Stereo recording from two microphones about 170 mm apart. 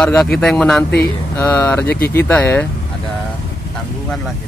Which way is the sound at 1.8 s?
75° left (ahead or behind).